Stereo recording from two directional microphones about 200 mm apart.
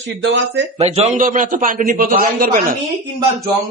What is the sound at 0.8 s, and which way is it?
A man's voice, 30° right (ahead or behind).